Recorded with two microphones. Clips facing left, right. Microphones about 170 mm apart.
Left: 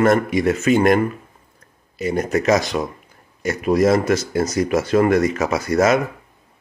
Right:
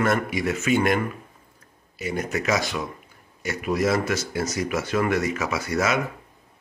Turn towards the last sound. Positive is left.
turn(degrees=40)  # may be behind; listen again after turning